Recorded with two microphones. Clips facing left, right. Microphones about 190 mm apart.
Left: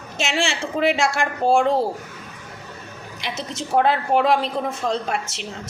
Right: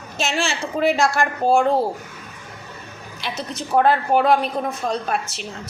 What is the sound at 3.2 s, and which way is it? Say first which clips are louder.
A woman's voice: right 1 dB; 25° left (ahead or behind).